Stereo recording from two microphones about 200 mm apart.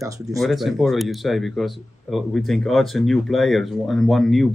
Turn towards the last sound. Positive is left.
turn(degrees=0)  # may be behind; listen again after turning